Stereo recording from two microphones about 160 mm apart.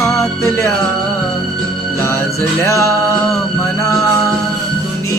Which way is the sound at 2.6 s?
20° left (ahead or behind).